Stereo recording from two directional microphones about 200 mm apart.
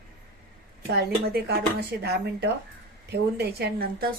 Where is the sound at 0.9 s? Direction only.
50° right (ahead or behind).